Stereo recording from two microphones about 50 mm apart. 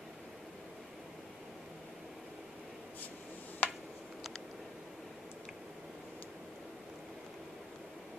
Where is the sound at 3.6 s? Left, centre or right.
Left.